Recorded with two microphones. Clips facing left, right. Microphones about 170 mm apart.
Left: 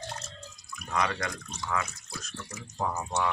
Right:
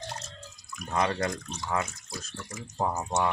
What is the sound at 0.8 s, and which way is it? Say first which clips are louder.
Speech: right 3 dB; 30° right (ahead or behind).